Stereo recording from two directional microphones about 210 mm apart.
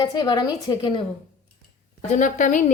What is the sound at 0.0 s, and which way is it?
A woman's voice, 20° left (ahead or behind).